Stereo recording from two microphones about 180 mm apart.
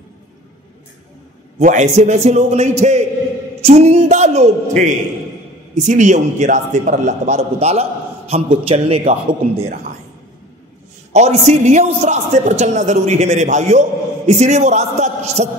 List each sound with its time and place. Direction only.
1.6 s a man's voice: 45° right (ahead or behind)
11.1 s a man's voice: 40° right (ahead or behind)